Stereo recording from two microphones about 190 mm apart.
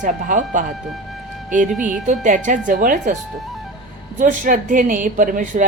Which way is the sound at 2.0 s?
40° right (ahead or behind).